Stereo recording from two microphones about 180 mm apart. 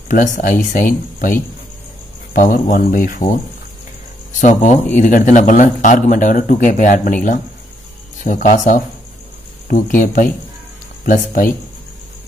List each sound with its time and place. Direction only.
0.1 s a man's voice: 45° left (ahead or behind)
4.4 s a man's voice: 40° left (ahead or behind)
8.2 s a man's voice: 45° left (ahead or behind)